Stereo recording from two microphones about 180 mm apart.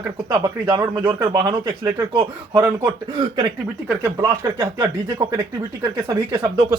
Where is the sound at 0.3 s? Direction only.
25° right (ahead or behind).